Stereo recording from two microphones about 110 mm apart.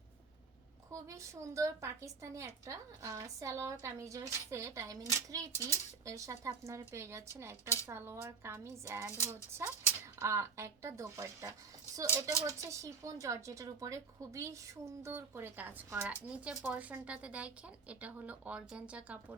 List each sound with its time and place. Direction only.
0.9 s a woman's voice: 30° right (ahead or behind); by 19.4 s 10° right (ahead or behind)